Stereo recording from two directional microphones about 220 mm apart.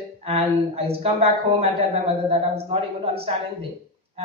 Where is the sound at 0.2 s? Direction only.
25° right (ahead or behind).